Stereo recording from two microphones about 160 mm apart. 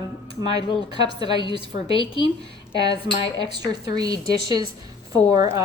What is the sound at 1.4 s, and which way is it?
Speech, 35° left (ahead or behind).